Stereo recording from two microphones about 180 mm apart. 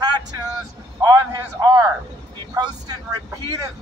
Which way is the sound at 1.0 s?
20° right (ahead or behind).